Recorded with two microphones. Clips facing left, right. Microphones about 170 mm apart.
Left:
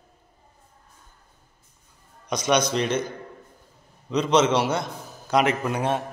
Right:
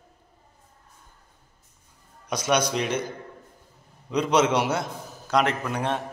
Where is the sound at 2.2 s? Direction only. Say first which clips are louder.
Left 2 dB; 5° right (ahead or behind).